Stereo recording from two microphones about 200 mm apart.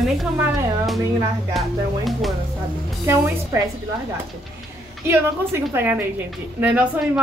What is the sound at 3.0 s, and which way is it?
Speech, 15° right (ahead or behind).